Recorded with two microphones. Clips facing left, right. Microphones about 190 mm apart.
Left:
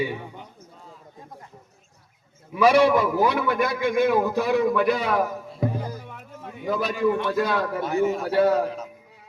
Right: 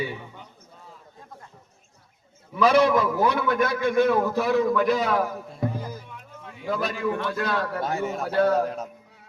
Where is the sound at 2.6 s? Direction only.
10° left (ahead or behind).